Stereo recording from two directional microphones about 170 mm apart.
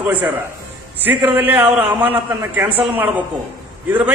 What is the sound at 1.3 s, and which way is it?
A man's voice, 10° right (ahead or behind).